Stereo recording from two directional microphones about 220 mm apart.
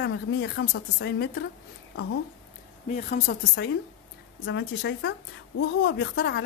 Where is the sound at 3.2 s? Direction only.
50° left (ahead or behind).